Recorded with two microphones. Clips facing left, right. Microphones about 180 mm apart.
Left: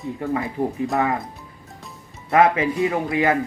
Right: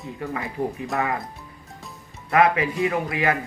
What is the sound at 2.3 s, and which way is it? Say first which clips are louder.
Speech: left 2 dB; 25° left (ahead or behind).